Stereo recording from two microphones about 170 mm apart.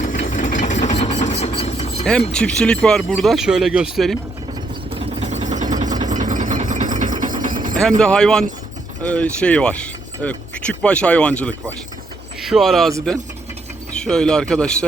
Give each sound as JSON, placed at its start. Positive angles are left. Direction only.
{"t": 0.0, "sound": "engine", "side_deg": 50}
{"t": 2.0, "sound": "speech", "side_deg": 5}
{"t": 4.9, "sound": "vehicle", "side_deg": -40}
{"t": 6.1, "sound": "a sound", "side_deg": -50}
{"t": 7.8, "sound": "speech", "side_deg": 5}
{"t": 13.9, "sound": "speech", "side_deg": 5}